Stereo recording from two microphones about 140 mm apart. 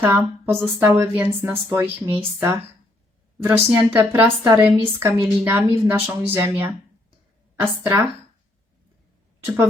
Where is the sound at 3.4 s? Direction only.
15° right (ahead or behind).